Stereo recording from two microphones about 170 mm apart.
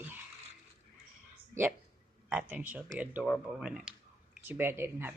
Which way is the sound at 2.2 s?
10° right (ahead or behind).